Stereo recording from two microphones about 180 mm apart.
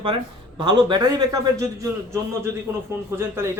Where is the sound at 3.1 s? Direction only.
15° right (ahead or behind).